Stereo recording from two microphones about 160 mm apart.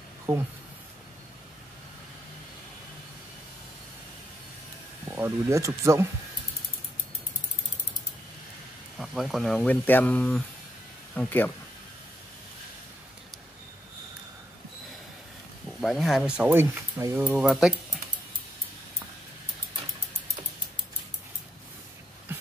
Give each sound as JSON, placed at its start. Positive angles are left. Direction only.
{"t": 5.0, "sound": "speech", "side_deg": -15}
{"t": 8.9, "sound": "speech", "side_deg": 0}
{"t": 15.8, "sound": "speech", "side_deg": 0}